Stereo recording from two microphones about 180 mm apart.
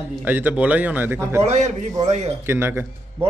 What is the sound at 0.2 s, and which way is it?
A man's voice, 10° right (ahead or behind).